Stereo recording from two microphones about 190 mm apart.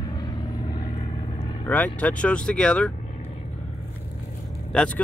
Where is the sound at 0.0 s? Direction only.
20° left (ahead or behind).